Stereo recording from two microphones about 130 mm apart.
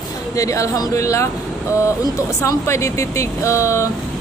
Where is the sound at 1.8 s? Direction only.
25° left (ahead or behind).